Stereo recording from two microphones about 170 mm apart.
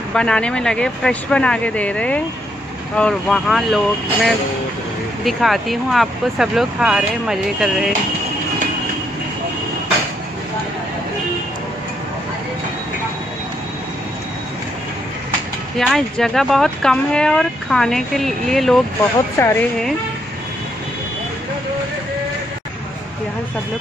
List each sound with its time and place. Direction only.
0.1 s speech: 5° left (ahead or behind)
15.8 s speech: centre (ahead or behind)
19.3 s speech: 15° left (ahead or behind)